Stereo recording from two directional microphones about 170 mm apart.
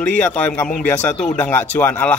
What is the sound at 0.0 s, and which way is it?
Speech, 10° left (ahead or behind).